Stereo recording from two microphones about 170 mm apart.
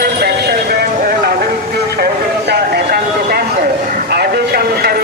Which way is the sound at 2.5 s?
70° right (ahead or behind).